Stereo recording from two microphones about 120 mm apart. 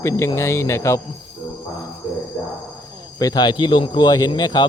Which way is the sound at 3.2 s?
35° left (ahead or behind).